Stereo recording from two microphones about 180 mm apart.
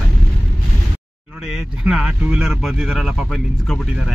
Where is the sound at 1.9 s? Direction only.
5° right (ahead or behind).